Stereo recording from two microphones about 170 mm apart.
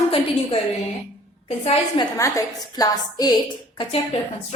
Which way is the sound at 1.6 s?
30° left (ahead or behind).